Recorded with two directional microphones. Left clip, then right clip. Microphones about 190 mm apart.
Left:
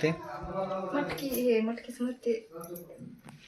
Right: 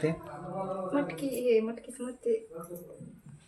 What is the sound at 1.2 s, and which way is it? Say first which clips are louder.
Speech: right 1 dB; 20° right (ahead or behind).